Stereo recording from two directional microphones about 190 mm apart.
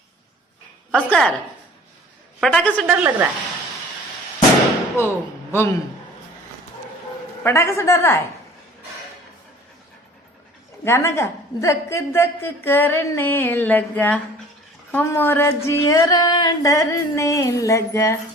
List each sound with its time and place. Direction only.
0.9 s a woman's voice: 5° left (ahead or behind)
2.4 s a woman's voice: 5° left (ahead or behind)
2.8 s speech: 10° right (ahead or behind)
4.9 s a man's voice: 15° left (ahead or behind)
7.4 s a woman's voice: 15° left (ahead or behind)
10.8 s a woman's voice: 15° left (ahead or behind)